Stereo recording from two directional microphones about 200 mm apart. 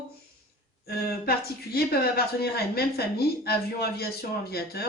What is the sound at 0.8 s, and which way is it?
A woman's voice, 50° left (ahead or behind).